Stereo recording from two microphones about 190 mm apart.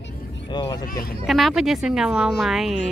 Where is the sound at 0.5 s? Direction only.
25° left (ahead or behind).